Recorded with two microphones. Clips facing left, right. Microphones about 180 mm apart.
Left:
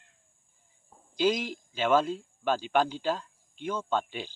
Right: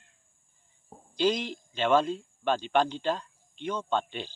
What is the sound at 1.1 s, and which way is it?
Speech, 5° left (ahead or behind).